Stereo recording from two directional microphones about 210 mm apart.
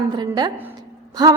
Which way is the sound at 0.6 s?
20° right (ahead or behind).